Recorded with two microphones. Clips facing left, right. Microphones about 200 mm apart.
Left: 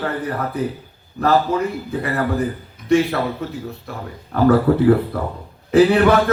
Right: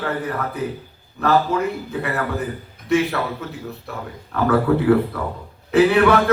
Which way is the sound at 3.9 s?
35° left (ahead or behind).